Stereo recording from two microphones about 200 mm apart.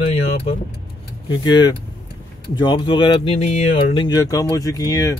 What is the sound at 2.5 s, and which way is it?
A man's voice, 25° left (ahead or behind).